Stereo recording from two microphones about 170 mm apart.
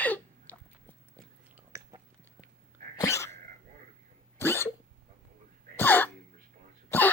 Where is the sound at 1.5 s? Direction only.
15° right (ahead or behind).